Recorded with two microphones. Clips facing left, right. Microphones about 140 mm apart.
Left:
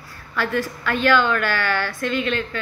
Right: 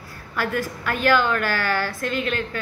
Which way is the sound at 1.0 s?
40° right (ahead or behind).